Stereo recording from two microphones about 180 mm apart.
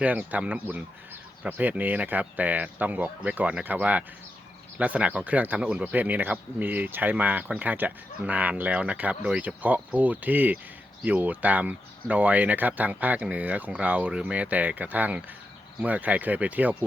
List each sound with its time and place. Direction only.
0.0 s speech: 10° right (ahead or behind)